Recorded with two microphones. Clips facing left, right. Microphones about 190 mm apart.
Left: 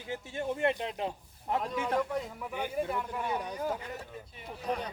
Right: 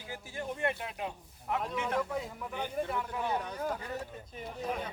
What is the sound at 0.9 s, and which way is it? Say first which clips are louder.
Speech: left 4 dB; 30° left (ahead or behind).